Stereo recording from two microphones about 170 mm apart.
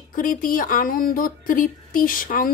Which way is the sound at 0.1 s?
55° left (ahead or behind).